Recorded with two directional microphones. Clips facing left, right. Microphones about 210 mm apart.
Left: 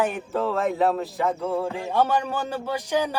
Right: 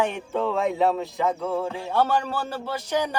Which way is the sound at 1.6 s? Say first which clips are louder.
Left 1 dB; 15° left (ahead or behind).